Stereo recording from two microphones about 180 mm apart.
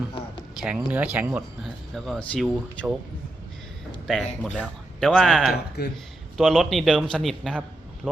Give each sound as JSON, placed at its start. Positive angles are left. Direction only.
{"t": 0.6, "sound": "speech", "side_deg": -10}
{"t": 4.0, "sound": "a man's voice", "side_deg": 5}
{"t": 5.8, "sound": "speech", "side_deg": 60}
{"t": 6.3, "sound": "a man's voice", "side_deg": 0}